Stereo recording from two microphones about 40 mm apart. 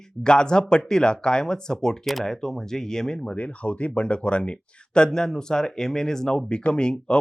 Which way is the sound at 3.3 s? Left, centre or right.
Left.